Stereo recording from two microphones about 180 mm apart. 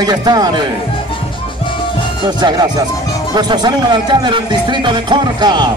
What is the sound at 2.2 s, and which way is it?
Speech, 25° right (ahead or behind).